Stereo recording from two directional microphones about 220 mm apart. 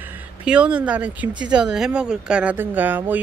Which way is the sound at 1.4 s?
5° right (ahead or behind).